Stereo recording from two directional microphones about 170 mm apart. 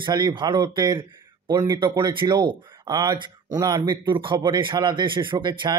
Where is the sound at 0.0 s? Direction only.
25° right (ahead or behind).